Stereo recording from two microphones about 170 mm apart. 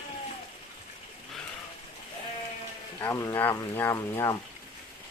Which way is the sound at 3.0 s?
20° left (ahead or behind).